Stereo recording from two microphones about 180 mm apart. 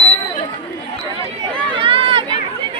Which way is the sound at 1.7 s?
30° right (ahead or behind).